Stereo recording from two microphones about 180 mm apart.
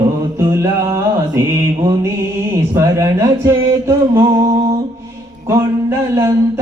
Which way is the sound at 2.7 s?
15° right (ahead or behind).